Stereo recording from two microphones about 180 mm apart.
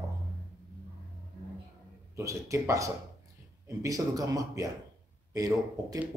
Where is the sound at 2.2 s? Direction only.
15° right (ahead or behind).